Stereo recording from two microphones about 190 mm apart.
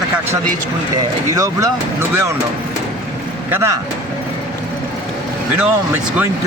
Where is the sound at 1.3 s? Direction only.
20° right (ahead or behind).